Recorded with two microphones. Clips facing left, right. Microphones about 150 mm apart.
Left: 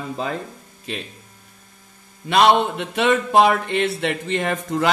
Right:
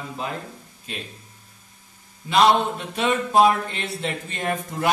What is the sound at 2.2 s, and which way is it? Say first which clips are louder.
Speech: left 2 dB; 80° left.